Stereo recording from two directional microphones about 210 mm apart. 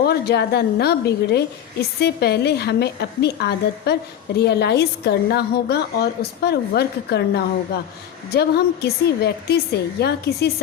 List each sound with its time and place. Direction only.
0.0 s a woman's voice: 50° left (ahead or behind)